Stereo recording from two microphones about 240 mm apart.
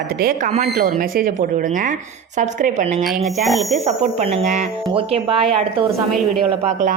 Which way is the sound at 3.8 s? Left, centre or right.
Right.